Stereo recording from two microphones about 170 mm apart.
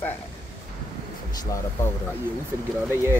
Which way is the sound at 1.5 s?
15° left (ahead or behind).